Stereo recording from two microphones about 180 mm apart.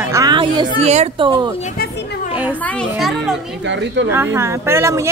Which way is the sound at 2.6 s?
5° left (ahead or behind).